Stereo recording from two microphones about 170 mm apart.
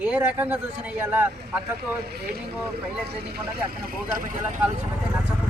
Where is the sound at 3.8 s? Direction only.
60° right (ahead or behind).